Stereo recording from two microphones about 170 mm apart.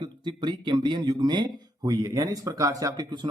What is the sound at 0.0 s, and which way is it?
A man's voice, 25° right (ahead or behind).